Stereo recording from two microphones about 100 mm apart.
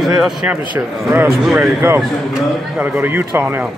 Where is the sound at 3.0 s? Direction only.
20° right (ahead or behind).